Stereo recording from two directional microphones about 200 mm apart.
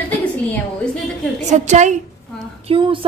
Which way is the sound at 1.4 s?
35° right (ahead or behind).